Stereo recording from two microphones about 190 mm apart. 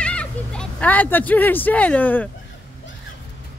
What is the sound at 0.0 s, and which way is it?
Speech, 5° left (ahead or behind).